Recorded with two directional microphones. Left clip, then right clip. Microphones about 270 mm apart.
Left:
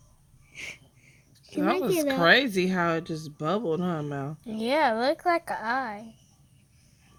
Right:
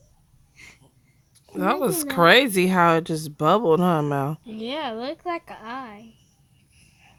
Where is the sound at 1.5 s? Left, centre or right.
Right.